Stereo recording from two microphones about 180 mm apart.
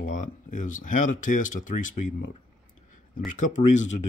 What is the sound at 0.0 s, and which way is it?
Speech, 45° left (ahead or behind).